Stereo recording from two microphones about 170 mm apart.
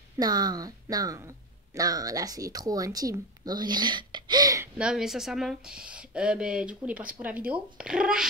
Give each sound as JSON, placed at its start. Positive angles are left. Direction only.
{"t": 0.2, "sound": "speech", "side_deg": -25}
{"t": 4.7, "sound": "speech", "side_deg": -5}